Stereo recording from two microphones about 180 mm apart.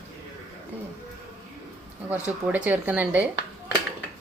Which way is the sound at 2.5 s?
10° right (ahead or behind).